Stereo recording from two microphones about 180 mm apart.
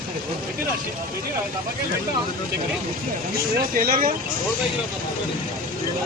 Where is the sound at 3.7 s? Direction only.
55° right (ahead or behind).